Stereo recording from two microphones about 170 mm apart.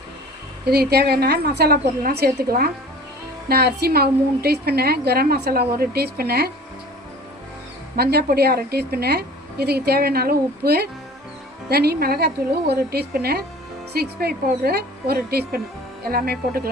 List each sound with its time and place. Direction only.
0.6 s a woman's voice: 70° right (ahead or behind)
7.9 s a woman's voice: 65° right (ahead or behind)